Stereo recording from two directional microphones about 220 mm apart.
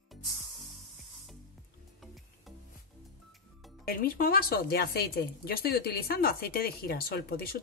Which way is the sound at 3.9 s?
40° left (ahead or behind).